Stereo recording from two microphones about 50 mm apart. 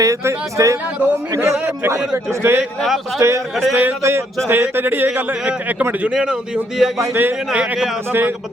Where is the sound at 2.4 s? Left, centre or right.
Right.